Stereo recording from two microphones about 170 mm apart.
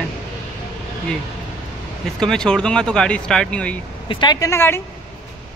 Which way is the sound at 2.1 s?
5° left (ahead or behind).